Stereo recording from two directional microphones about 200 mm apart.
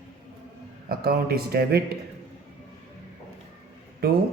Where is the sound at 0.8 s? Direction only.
50° right (ahead or behind).